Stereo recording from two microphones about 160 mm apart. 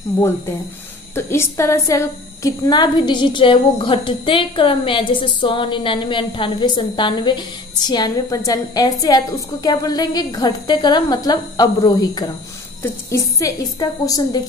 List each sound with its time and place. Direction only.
1.1 s a woman's voice: 15° left (ahead or behind)